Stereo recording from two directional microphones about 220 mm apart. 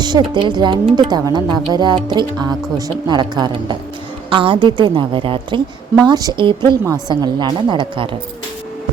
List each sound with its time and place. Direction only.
0.0 s a woman's voice: 20° right (ahead or behind)